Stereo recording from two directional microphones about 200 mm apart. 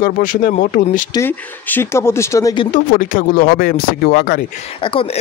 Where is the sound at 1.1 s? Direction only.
10° left (ahead or behind).